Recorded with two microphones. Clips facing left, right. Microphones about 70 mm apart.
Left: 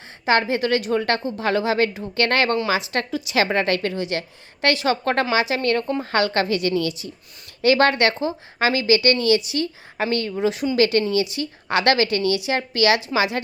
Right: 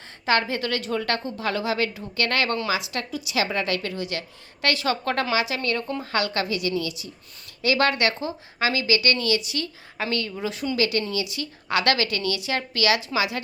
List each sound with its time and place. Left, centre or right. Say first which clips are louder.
0.3 s a woman's voice: left 4 dB; left
10.8 s a woman's voice: left 6 dB; left